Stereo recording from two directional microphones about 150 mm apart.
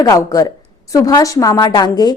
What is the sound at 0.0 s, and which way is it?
A woman's voice, 25° left (ahead or behind).